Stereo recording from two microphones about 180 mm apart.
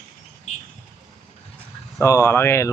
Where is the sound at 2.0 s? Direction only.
15° left (ahead or behind).